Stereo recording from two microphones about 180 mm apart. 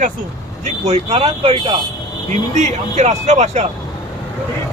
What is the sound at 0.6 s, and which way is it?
Speech, 35° right (ahead or behind).